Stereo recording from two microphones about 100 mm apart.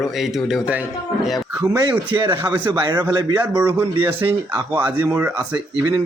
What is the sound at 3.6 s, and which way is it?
Speech, 20° right (ahead or behind).